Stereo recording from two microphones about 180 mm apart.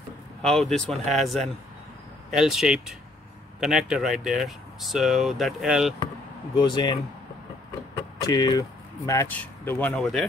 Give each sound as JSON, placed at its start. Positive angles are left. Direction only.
{"t": 0.4, "sound": "speech", "side_deg": 5}
{"t": 6.6, "sound": "speech", "side_deg": 25}